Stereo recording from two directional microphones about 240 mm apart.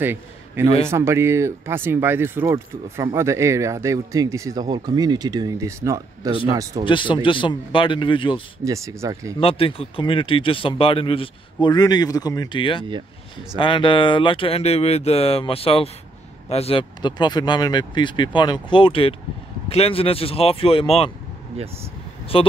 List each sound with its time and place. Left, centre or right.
0.0 s a man's voice: centre
6.8 s speech: left
8.6 s speech: centre
9.4 s speech: left
22.3 s speech: left